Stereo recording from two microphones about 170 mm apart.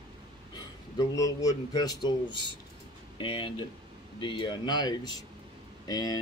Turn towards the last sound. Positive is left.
turn(degrees=20)  # may be behind; listen again after turning